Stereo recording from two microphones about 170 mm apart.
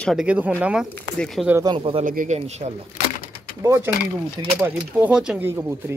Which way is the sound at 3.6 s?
15° right (ahead or behind).